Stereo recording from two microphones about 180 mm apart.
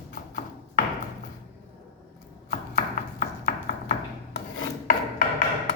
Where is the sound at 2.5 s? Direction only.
50° left (ahead or behind).